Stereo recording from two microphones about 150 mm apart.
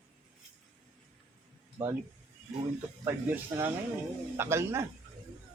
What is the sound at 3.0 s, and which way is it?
Speech, 15° right (ahead or behind).